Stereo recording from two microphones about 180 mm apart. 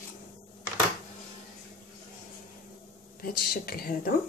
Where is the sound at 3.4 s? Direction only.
55° left (ahead or behind).